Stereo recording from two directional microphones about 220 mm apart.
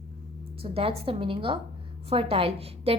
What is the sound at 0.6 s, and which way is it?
A woman's voice, 25° right (ahead or behind).